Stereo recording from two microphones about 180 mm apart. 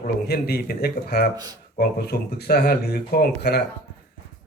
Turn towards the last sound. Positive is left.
turn(degrees=65)  # may be behind; listen again after turning